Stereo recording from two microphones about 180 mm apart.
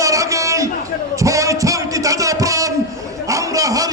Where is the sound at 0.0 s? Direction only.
15° right (ahead or behind).